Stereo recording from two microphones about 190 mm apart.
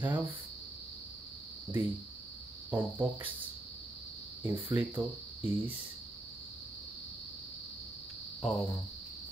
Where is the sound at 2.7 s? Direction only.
10° right (ahead or behind).